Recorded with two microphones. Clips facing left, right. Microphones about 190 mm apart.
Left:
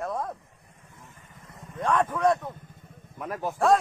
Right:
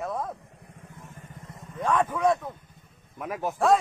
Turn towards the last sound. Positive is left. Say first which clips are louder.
# right 1 dB
turn(degrees=-10)  # may be behind; listen again after turning